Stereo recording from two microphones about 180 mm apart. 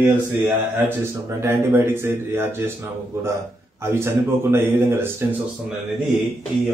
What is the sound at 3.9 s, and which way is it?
A man's voice, 15° right (ahead or behind).